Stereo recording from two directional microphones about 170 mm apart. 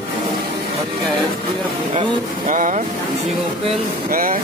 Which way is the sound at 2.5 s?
50° right (ahead or behind).